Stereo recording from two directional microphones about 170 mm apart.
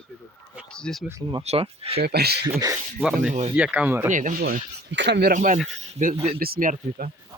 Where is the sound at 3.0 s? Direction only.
5° right (ahead or behind).